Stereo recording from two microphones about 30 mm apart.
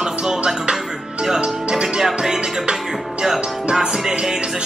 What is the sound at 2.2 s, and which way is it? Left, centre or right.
Speech, right.